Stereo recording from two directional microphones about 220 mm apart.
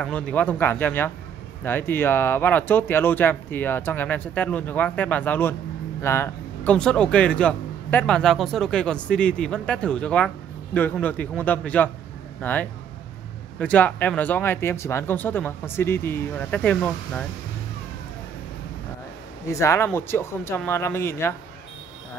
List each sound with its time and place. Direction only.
0.0 s speech: 5° left (ahead or behind)
19.4 s speech: 15° left (ahead or behind)